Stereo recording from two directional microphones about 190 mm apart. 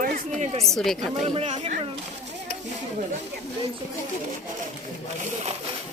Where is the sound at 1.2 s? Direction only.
35° right (ahead or behind).